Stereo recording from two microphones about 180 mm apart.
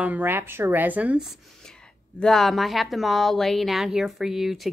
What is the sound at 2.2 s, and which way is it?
A woman's voice, centre (ahead or behind).